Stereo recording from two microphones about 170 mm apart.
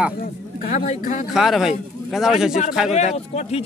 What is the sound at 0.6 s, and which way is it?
Speech, 45° left (ahead or behind).